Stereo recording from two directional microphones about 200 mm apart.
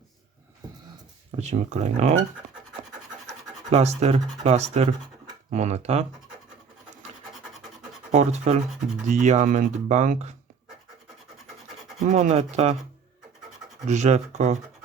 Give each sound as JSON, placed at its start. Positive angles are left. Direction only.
{"t": 1.4, "sound": "speech", "side_deg": -35}
{"t": 3.7, "sound": "speech", "side_deg": -35}
{"t": 8.1, "sound": "speech", "side_deg": -35}
{"t": 12.1, "sound": "speech", "side_deg": -35}
{"t": 13.8, "sound": "speech", "side_deg": -35}